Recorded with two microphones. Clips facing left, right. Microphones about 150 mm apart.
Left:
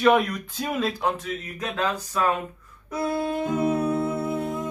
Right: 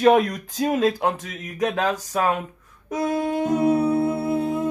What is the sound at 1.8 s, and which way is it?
Speech, 40° right (ahead or behind).